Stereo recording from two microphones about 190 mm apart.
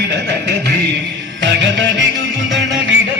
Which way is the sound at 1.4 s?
75° right (ahead or behind).